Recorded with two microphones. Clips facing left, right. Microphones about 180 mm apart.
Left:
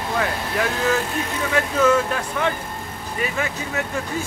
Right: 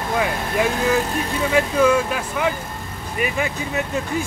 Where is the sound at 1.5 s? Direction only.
10° right (ahead or behind).